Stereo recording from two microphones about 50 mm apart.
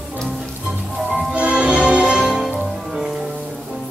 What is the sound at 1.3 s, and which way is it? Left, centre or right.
Music, right.